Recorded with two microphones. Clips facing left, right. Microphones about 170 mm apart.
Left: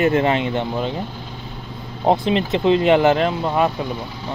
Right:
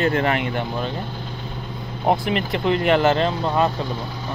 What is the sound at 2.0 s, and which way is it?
Speech, 20° left (ahead or behind).